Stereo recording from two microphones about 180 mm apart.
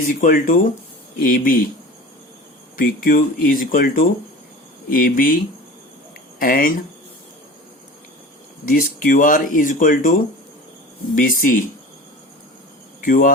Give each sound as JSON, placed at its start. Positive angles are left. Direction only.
{"t": 0.1, "sound": "speech", "side_deg": 50}
{"t": 2.7, "sound": "speech", "side_deg": 50}
{"t": 6.4, "sound": "speech", "side_deg": 50}
{"t": 8.7, "sound": "speech", "side_deg": 50}
{"t": 13.0, "sound": "speech", "side_deg": 50}